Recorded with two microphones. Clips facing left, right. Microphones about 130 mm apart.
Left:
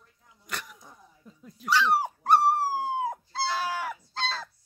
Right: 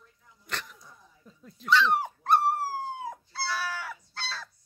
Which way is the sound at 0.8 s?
15° left (ahead or behind).